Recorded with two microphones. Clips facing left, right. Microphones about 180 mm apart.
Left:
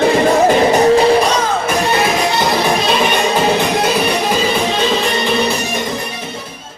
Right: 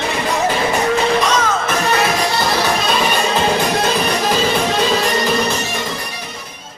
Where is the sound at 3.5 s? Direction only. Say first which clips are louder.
Left 2 dB; 15° left (ahead or behind).